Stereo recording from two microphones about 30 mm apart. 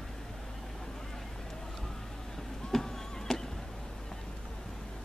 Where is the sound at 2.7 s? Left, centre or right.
Centre.